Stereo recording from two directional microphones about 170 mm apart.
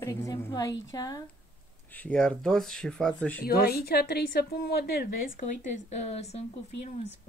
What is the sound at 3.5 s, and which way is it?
A woman's voice, 65° left (ahead or behind).